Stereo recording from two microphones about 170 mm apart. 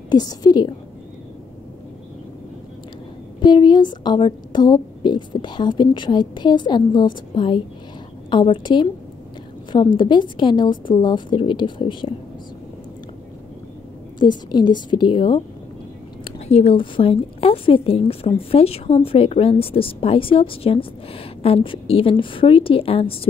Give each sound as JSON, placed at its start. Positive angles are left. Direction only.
{"t": 0.1, "sound": "a woman's voice", "side_deg": 25}
{"t": 3.4, "sound": "a woman's voice", "side_deg": 25}
{"t": 9.9, "sound": "a woman's voice", "side_deg": 25}
{"t": 14.2, "sound": "a woman's voice", "side_deg": 25}